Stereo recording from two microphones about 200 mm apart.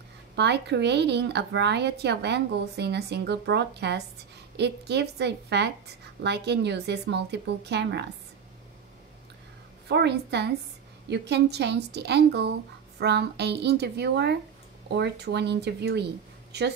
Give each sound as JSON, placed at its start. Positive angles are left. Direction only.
{"t": 0.4, "sound": "a woman's voice", "side_deg": -60}
{"t": 9.8, "sound": "a woman's voice", "side_deg": -55}